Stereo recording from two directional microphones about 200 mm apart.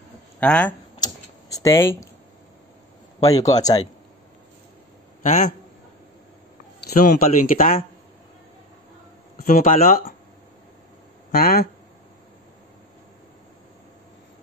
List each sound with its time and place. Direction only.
0.4 s speech: 5° left (ahead or behind)
3.2 s speech: 15° left (ahead or behind)
5.2 s a man's voice: 35° left (ahead or behind)
7.1 s speech: 45° left (ahead or behind)
9.4 s speech: 45° left (ahead or behind)
11.3 s speech: 50° left (ahead or behind)